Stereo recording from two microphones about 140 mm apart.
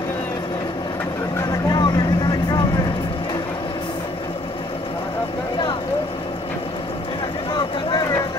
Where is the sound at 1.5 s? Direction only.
30° left (ahead or behind).